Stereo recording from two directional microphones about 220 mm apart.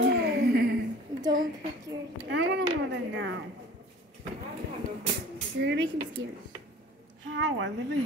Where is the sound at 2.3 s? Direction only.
55° right (ahead or behind).